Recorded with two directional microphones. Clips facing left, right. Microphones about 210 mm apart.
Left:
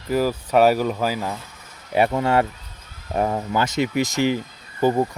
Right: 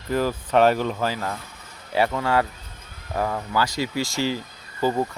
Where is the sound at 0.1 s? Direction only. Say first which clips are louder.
Left 2 dB; 10° left (ahead or behind).